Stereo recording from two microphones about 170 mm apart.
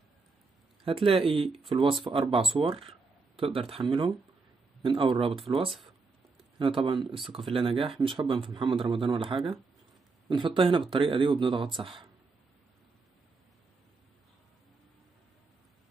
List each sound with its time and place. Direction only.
0.8 s speech: 35° right (ahead or behind)
4.8 s speech: 30° right (ahead or behind)
5.7 s speech: centre (ahead or behind)
6.3 s a sound: 30° right (ahead or behind)
7.3 s speech: 30° right (ahead or behind)